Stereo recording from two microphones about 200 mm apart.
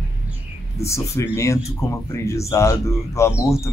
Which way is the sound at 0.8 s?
15° left (ahead or behind).